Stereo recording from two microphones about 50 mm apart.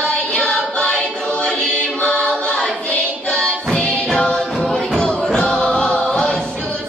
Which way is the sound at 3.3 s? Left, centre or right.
Centre.